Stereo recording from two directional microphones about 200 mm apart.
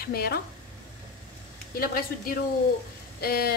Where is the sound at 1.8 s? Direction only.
50° left (ahead or behind).